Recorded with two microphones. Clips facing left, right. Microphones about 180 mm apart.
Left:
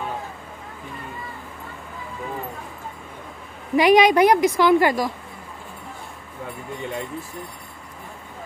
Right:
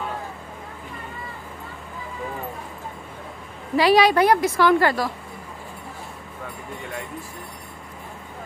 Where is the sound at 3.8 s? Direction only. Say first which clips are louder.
Left 2 dB; 15° left (ahead or behind).